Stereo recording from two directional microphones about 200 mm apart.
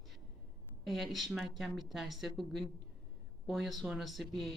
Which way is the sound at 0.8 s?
Centre (ahead or behind).